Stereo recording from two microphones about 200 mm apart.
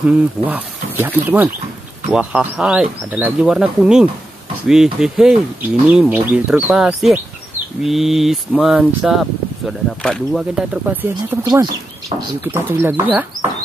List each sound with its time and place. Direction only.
0.0 s speech: 10° right (ahead or behind)
11.4 s speech: 20° right (ahead or behind)
12.4 s speech: 10° right (ahead or behind)